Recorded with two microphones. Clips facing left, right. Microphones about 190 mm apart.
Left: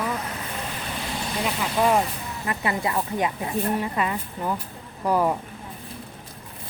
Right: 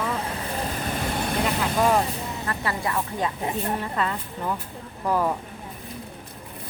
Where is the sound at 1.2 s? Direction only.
55° right (ahead or behind).